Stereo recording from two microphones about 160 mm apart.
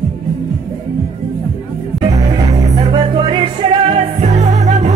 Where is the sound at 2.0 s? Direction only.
20° right (ahead or behind).